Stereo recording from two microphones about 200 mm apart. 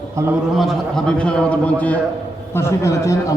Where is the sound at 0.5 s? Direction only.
Centre (ahead or behind).